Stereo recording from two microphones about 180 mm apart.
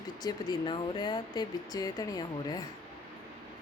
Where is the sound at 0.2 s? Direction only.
20° left (ahead or behind).